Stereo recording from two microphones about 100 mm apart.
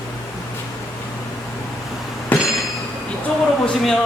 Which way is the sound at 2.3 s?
15° left (ahead or behind).